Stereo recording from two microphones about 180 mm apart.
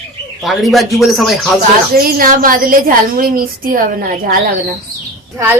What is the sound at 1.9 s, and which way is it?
A woman's voice, 55° right (ahead or behind).